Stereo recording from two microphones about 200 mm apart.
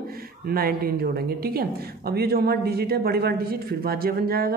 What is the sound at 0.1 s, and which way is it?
A man's voice, 50° right (ahead or behind).